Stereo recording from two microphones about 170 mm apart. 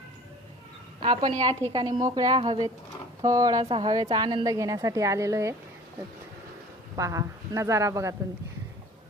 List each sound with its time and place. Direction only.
0.9 s a woman's voice: 25° right (ahead or behind)
3.6 s a woman's voice: 30° right (ahead or behind); by 5.5 s 15° right (ahead or behind)
6.9 s speech: 20° right (ahead or behind)